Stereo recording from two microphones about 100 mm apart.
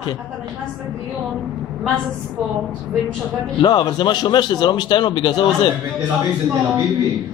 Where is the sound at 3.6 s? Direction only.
50° left (ahead or behind).